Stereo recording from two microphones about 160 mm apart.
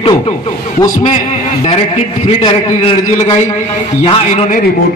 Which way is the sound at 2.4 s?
35° left (ahead or behind).